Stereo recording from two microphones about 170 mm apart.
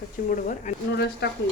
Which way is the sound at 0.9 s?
75° left (ahead or behind).